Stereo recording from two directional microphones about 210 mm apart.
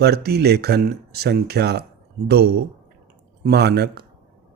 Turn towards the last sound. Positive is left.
turn(degrees=-50)  # may be behind; listen again after turning